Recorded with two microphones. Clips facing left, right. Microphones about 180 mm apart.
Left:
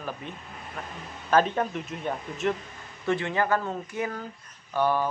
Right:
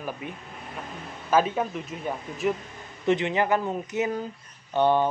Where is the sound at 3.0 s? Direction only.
20° right (ahead or behind).